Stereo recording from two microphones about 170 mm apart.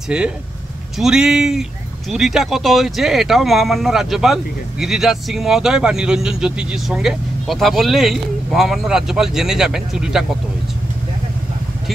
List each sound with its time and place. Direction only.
0.1 s speech: 5° right (ahead or behind)